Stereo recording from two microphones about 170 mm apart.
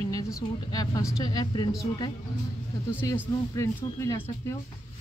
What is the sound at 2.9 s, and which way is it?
Speech, 15° left (ahead or behind).